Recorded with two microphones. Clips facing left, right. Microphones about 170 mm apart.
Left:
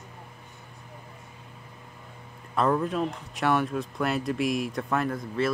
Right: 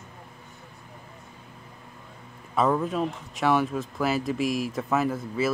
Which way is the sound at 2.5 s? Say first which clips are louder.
Right 1 dB; centre (ahead or behind).